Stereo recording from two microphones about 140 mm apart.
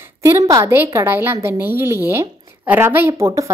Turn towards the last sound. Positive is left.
turn(degrees=-20)  # may be behind; listen again after turning